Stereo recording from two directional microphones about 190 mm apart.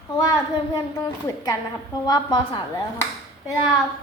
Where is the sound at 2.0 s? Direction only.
20° left (ahead or behind).